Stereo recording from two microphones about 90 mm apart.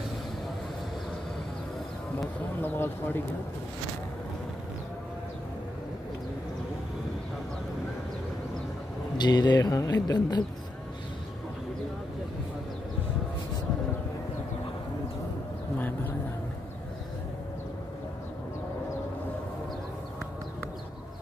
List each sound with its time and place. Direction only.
2.6 s speech: 20° left (ahead or behind)
9.2 s speech: 50° left (ahead or behind)